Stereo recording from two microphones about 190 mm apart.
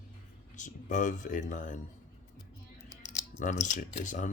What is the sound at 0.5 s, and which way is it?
Speech, 40° left (ahead or behind).